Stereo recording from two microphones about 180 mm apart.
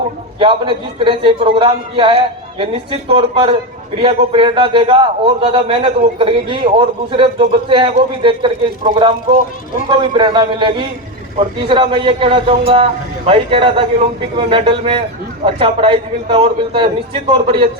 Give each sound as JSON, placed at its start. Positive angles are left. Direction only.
{"t": 0.3, "sound": "a man's voice", "side_deg": -30}
{"t": 10.0, "sound": "a man's voice", "side_deg": -25}